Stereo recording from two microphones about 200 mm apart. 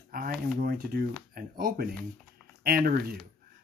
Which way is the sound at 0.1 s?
45° right (ahead or behind).